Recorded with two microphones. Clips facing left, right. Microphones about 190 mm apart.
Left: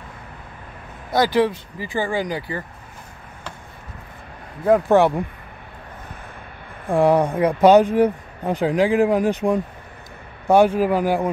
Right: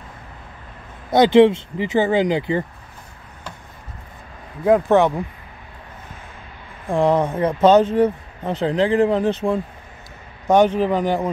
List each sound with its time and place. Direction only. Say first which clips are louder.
1.1 s speech: right 6 dB; 25° right (ahead or behind)
4.8 s speech: even; 10° left (ahead or behind)
6.9 s speech: left 1 dB; 10° left (ahead or behind)